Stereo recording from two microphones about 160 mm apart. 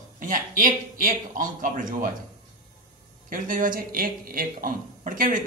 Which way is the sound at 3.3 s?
60° right (ahead or behind).